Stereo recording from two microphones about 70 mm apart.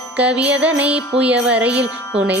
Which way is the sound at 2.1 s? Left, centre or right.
Centre.